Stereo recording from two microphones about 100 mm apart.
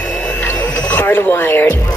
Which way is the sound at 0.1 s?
15° left (ahead or behind).